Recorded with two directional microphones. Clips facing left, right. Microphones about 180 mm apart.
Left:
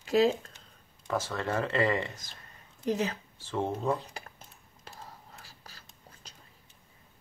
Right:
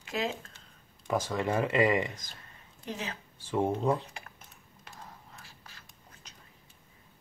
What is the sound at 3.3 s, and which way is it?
Speech, 10° right (ahead or behind).